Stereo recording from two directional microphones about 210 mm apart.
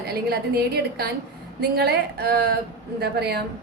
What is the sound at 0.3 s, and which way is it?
A woman's voice, 50° right (ahead or behind).